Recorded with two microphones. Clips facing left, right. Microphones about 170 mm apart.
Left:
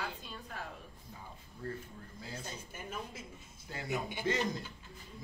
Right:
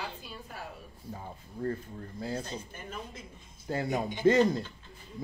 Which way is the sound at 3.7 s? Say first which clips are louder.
Right 7 dB; 45° right (ahead or behind).